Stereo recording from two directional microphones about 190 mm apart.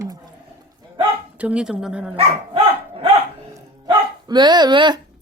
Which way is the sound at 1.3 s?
5° right (ahead or behind).